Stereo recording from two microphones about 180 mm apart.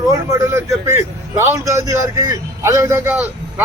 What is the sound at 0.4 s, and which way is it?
A man's voice, 15° right (ahead or behind).